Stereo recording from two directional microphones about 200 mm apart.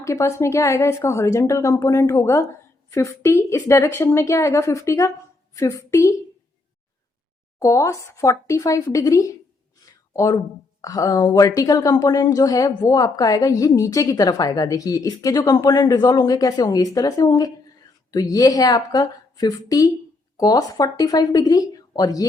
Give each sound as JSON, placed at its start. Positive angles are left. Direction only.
{"t": 0.0, "sound": "speech", "side_deg": 15}
{"t": 7.6, "sound": "speech", "side_deg": 15}